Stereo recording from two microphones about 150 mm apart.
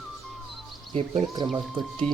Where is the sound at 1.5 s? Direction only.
30° right (ahead or behind).